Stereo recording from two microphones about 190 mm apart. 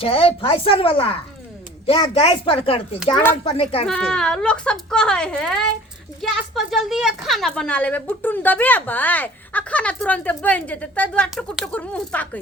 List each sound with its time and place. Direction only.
0.0 s a woman's voice: 30° left (ahead or behind)
3.8 s a woman's voice: 5° left (ahead or behind)